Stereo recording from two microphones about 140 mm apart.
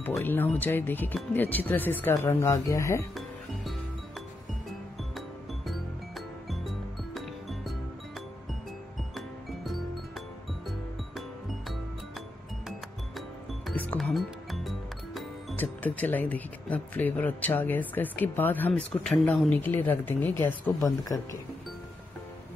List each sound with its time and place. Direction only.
0.2 s speech: 15° left (ahead or behind)
5.7 s music: centre (ahead or behind)
9.1 s music: centre (ahead or behind)
13.7 s music: 10° left (ahead or behind)
14.1 s music: centre (ahead or behind)
15.5 s speech: 10° left (ahead or behind)